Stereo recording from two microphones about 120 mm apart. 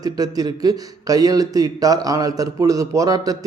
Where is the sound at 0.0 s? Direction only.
30° right (ahead or behind).